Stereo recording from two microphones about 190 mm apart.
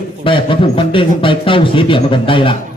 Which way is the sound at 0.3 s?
25° left (ahead or behind).